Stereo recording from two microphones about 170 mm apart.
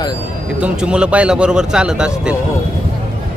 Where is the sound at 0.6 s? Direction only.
5° right (ahead or behind).